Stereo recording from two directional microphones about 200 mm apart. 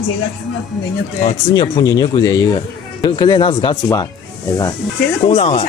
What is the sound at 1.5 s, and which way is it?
Speech, 20° left (ahead or behind).